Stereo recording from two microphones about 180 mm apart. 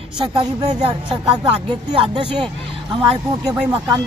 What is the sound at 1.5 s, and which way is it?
Speech, 25° right (ahead or behind).